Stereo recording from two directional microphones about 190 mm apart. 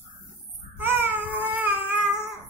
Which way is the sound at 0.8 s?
10° right (ahead or behind).